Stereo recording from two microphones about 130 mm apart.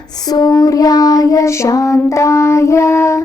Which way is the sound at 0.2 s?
30° left (ahead or behind).